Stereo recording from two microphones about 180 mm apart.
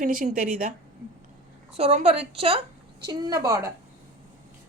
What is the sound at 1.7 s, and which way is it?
Speech, 35° right (ahead or behind).